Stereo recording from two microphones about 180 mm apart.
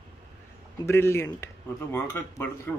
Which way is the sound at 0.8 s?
15° left (ahead or behind).